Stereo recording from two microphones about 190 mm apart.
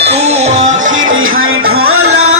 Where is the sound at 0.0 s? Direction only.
35° right (ahead or behind).